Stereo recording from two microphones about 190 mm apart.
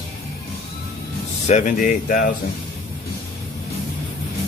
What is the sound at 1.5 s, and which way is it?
Speech, 40° left (ahead or behind).